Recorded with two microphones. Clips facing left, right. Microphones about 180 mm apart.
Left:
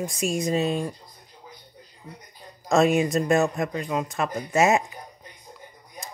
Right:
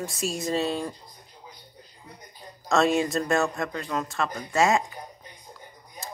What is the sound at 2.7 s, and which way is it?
Speech, 15° left (ahead or behind).